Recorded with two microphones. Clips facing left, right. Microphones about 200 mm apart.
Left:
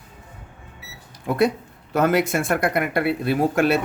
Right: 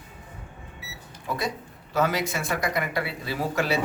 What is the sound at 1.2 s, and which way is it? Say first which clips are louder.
Speech: left 10 dB; 60° left (ahead or behind).